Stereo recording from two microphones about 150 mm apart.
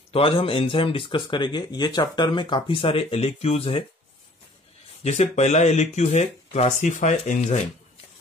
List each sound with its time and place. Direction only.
0.1 s speech: 35° left (ahead or behind)
5.0 s speech: 45° left (ahead or behind)